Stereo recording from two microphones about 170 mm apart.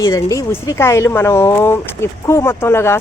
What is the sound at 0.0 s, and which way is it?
Speech, 20° left (ahead or behind).